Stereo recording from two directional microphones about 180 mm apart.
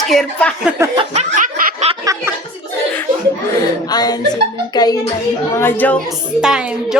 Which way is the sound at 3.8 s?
20° left (ahead or behind).